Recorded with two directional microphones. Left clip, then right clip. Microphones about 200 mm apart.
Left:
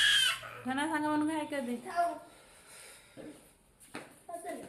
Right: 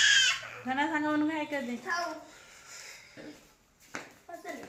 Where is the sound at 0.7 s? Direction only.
Centre (ahead or behind).